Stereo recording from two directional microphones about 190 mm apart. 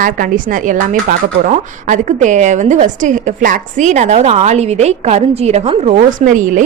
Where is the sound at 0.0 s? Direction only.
45° right (ahead or behind).